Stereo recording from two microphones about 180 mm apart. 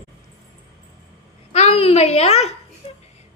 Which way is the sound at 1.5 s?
35° left (ahead or behind).